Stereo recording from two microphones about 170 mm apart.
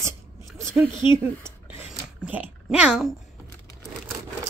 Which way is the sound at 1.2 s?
10° right (ahead or behind).